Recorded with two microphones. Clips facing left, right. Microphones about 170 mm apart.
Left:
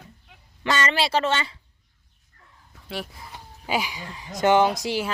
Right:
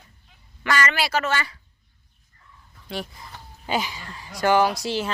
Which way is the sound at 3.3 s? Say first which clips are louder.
Even; 10° left (ahead or behind).